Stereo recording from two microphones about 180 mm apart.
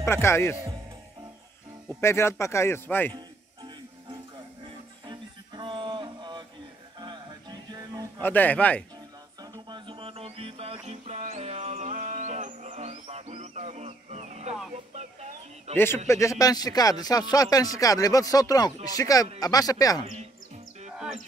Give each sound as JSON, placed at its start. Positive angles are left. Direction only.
{"t": 0.0, "sound": "speech", "side_deg": 15}
{"t": 1.9, "sound": "speech", "side_deg": 15}
{"t": 3.1, "sound": "music", "side_deg": -25}
{"t": 8.2, "sound": "speech", "side_deg": 10}
{"t": 9.4, "sound": "music", "side_deg": -25}
{"t": 15.0, "sound": "a sound", "side_deg": -40}
{"t": 16.1, "sound": "speech", "side_deg": 15}
{"t": 20.9, "sound": "music", "side_deg": -5}